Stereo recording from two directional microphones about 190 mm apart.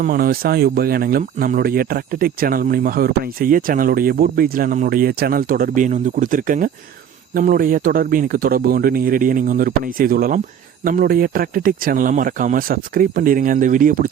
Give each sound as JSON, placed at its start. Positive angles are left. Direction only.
{"t": 0.0, "sound": "speech", "side_deg": -50}